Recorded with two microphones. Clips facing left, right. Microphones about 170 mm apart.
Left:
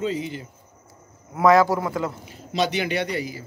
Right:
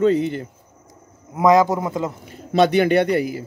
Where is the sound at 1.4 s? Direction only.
20° right (ahead or behind).